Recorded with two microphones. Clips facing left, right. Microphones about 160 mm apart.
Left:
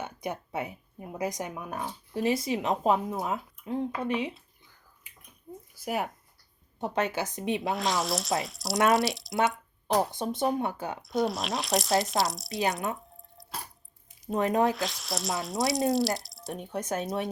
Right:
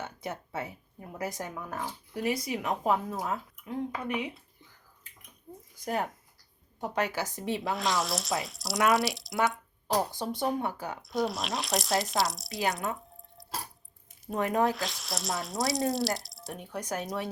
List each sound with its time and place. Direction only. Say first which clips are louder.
0.0 s speech: left 3 dB; 15° left (ahead or behind)
5.1 s bathtub: left 1 dB; 10° left (ahead or behind)
5.7 s speech: even; 10° left (ahead or behind)
6.7 s speech: left 2 dB; 25° left (ahead or behind)
7.7 s speech: even; centre (ahead or behind)
9.8 s speech: left 3 dB; 20° left (ahead or behind)
11.0 s speech: left 2 dB; centre (ahead or behind)
14.3 s speech: left 2 dB; 20° left (ahead or behind)
14.7 s speech: left 2 dB; centre (ahead or behind)
16.5 s speech: left 3 dB; 20° left (ahead or behind)